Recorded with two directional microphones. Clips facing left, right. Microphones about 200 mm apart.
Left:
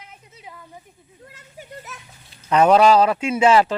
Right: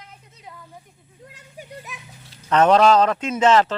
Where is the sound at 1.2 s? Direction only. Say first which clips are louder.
Right 1 dB; 15° right (ahead or behind).